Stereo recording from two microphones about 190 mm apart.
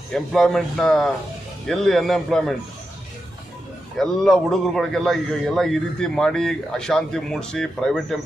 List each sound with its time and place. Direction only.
0.1 s a man's voice: centre (ahead or behind)
4.0 s a man's voice: centre (ahead or behind)